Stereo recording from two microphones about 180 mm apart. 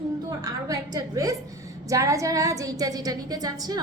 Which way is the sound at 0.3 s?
20° right (ahead or behind).